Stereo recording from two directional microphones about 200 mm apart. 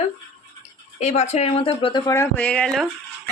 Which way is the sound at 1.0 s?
35° left (ahead or behind).